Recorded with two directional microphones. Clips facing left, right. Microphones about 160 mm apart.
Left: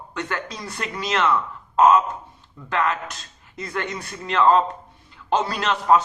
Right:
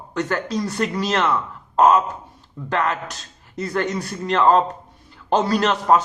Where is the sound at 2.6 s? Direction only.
40° right (ahead or behind).